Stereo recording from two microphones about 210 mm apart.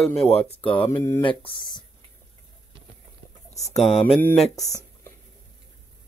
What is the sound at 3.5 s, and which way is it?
Speech, 30° left (ahead or behind).